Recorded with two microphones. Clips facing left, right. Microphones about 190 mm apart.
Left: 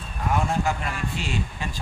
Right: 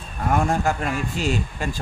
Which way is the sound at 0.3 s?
50° right (ahead or behind).